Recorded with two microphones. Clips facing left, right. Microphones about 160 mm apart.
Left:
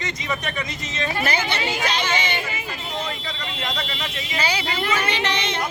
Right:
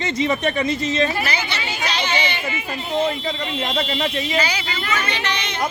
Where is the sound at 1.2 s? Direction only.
50° left (ahead or behind).